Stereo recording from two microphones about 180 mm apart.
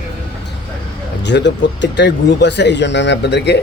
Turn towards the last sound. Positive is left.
turn(degrees=70)  # may be behind; listen again after turning